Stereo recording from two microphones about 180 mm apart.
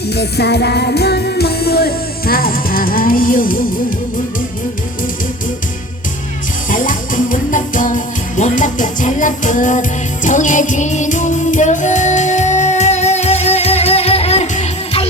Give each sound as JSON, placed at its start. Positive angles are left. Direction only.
{"t": 0.1, "sound": "music", "side_deg": 65}
{"t": 6.7, "sound": "music", "side_deg": 50}